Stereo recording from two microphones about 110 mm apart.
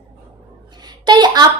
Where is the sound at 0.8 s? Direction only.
40° right (ahead or behind).